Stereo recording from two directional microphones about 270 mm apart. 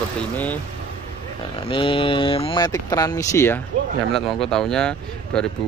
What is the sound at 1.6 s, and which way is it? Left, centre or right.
Speech, centre.